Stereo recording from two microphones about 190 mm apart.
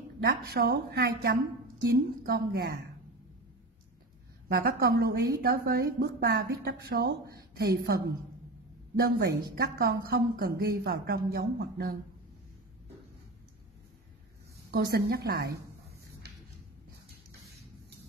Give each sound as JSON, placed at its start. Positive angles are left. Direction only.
{"t": 0.2, "sound": "a woman's voice", "side_deg": -55}
{"t": 4.5, "sound": "a woman's voice", "side_deg": -50}
{"t": 14.7, "sound": "a woman's voice", "side_deg": -55}